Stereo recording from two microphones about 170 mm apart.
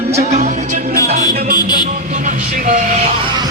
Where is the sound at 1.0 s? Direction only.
60° right (ahead or behind).